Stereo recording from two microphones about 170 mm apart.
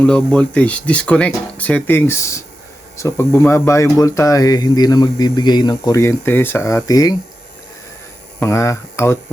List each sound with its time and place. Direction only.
0.0 s speech: 5° left (ahead or behind)
8.4 s speech: 15° left (ahead or behind)